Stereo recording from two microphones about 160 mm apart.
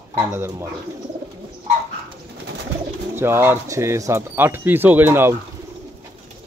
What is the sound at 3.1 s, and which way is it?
Speech, 15° right (ahead or behind).